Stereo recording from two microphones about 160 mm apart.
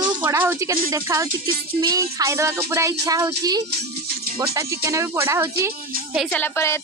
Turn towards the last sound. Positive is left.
turn(degrees=15)  # may be behind; listen again after turning